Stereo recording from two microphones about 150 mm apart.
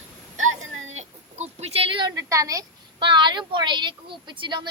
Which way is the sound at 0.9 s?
50° right (ahead or behind).